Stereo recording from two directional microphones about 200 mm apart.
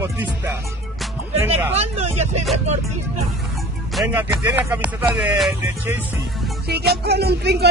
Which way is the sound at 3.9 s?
10° right (ahead or behind).